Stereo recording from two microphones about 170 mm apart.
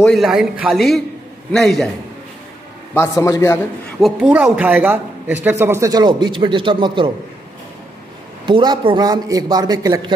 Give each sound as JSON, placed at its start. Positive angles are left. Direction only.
{"t": 0.0, "sound": "a man's voice", "side_deg": 0}
{"t": 2.9, "sound": "a man's voice", "side_deg": 15}
{"t": 4.0, "sound": "speech", "side_deg": -5}
{"t": 8.5, "sound": "a man's voice", "side_deg": -30}